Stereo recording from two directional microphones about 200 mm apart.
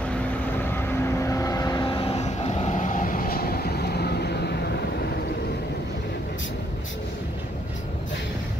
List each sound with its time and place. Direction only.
0.7 s vehicle: 10° left (ahead or behind); by 4.6 s 55° left (ahead or behind)